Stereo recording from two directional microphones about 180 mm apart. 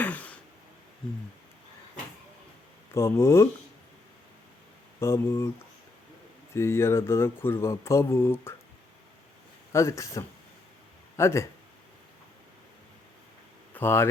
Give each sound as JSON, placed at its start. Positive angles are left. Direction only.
{"t": 0.0, "sound": "a sound", "side_deg": 10}
{"t": 2.9, "sound": "speech", "side_deg": 15}
{"t": 4.9, "sound": "speech", "side_deg": 15}
{"t": 6.5, "sound": "speech", "side_deg": 15}
{"t": 9.7, "sound": "speech", "side_deg": 15}
{"t": 13.7, "sound": "speech", "side_deg": 10}